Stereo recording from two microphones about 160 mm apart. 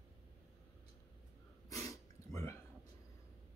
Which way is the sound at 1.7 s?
20° left (ahead or behind).